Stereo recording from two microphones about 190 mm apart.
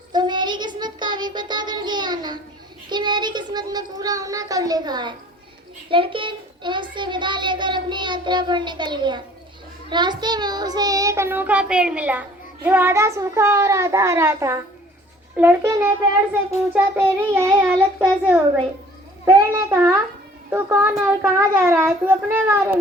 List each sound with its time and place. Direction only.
0.1 s child singing: 25° right (ahead or behind)
2.9 s a child's voice: 25° right (ahead or behind)
9.9 s child singing: 25° right (ahead or behind); by 22.8 s 10° right (ahead or behind)